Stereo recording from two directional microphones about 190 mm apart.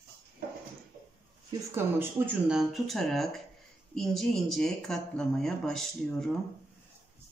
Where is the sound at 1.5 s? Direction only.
20° right (ahead or behind).